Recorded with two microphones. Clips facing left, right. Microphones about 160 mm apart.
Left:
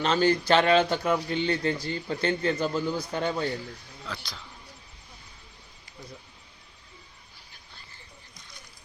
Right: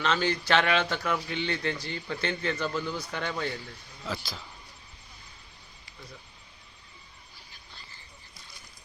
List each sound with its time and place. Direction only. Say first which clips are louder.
0.0 s a man's voice: left 5 dB; 35° left (ahead or behind)
4.0 s speech: right 4 dB; 5° right (ahead or behind)